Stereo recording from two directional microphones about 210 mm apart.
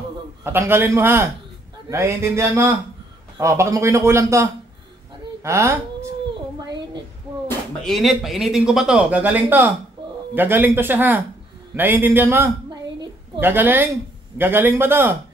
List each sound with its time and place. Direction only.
0.4 s a man's voice: 10° right (ahead or behind)
7.8 s a man's voice: centre (ahead or behind)